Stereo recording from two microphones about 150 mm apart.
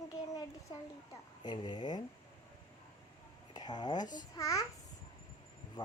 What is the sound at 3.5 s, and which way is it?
Speech, 30° left (ahead or behind).